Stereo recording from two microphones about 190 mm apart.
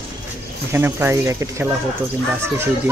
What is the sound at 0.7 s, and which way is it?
Speech, 10° right (ahead or behind).